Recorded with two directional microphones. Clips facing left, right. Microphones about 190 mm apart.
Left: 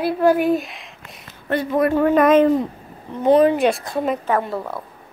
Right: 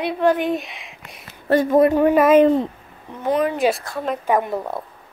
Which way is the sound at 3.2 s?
30° left (ahead or behind).